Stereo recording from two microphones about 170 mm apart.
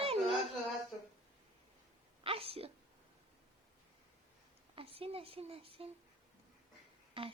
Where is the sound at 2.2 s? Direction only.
35° right (ahead or behind).